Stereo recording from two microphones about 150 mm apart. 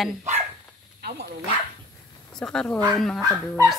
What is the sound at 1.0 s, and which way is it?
Speech, 90° right.